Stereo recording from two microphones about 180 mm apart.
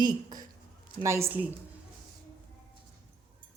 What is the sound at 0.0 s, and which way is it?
A woman's voice, 20° right (ahead or behind).